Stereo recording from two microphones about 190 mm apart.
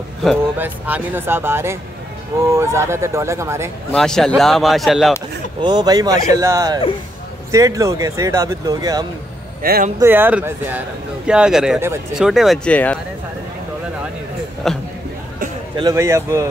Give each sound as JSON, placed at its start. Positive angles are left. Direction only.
{"t": 0.6, "sound": "speech", "side_deg": -10}
{"t": 3.9, "sound": "a man's voice", "side_deg": 5}
{"t": 5.6, "sound": "speech", "side_deg": -20}
{"t": 9.6, "sound": "speech", "side_deg": -50}
{"t": 9.9, "sound": "a man's voice", "side_deg": -10}
{"t": 14.7, "sound": "a man's voice", "side_deg": 0}
{"t": 15.7, "sound": "speech", "side_deg": -20}